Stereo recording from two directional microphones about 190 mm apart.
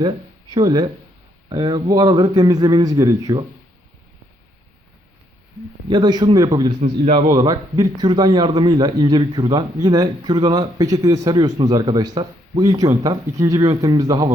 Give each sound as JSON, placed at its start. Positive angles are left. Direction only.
{"t": 0.5, "sound": "a man's voice", "side_deg": -20}
{"t": 5.9, "sound": "a man's voice", "side_deg": -20}
{"t": 6.8, "sound": "a man's voice", "side_deg": -30}
{"t": 7.3, "sound": "a man's voice", "side_deg": -20}